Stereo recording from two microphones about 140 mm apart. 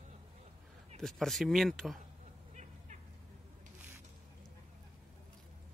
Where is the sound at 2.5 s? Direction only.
60° right (ahead or behind).